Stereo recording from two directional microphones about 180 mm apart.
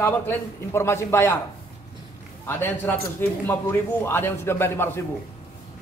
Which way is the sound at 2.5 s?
10° left (ahead or behind).